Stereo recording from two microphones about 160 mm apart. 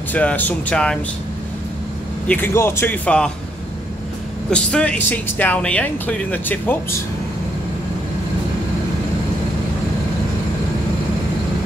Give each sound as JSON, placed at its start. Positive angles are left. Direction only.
{"t": 0.1, "sound": "speech", "side_deg": 10}
{"t": 2.2, "sound": "speech", "side_deg": 10}
{"t": 4.5, "sound": "speech", "side_deg": 5}